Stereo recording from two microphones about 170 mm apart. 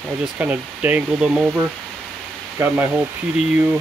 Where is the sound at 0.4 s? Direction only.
10° right (ahead or behind).